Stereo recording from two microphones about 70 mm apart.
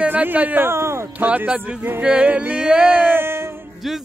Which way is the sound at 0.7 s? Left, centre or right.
Right.